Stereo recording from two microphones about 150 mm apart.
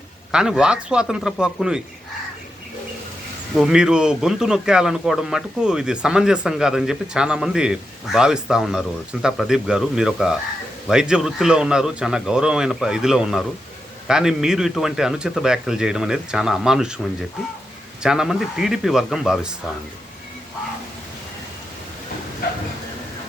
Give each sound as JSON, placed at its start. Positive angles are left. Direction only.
{"t": 0.3, "sound": "speech", "side_deg": -5}
{"t": 3.5, "sound": "speech", "side_deg": -5}
{"t": 18.0, "sound": "speech", "side_deg": -5}